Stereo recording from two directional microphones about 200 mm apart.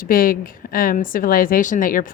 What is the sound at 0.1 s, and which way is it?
A woman's voice, 45° left (ahead or behind).